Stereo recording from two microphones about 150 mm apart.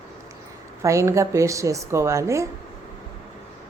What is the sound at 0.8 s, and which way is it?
A woman's voice, 20° right (ahead or behind).